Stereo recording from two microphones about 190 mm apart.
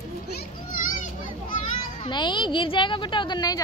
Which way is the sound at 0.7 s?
50° left (ahead or behind).